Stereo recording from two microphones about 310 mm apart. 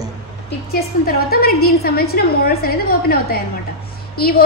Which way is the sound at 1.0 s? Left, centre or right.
Left.